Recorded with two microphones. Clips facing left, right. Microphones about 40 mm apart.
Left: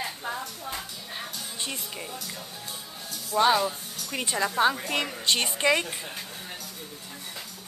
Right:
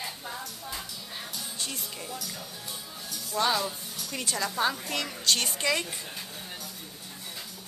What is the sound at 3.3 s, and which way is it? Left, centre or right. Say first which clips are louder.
A woman's voice: left 5 dB; left.